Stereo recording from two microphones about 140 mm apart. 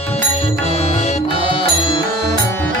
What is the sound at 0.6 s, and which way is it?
Music, 45° left (ahead or behind).